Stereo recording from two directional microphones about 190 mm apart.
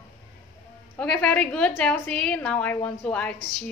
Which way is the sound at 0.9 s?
5° left (ahead or behind).